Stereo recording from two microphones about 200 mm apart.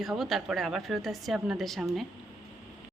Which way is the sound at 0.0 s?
Centre (ahead or behind).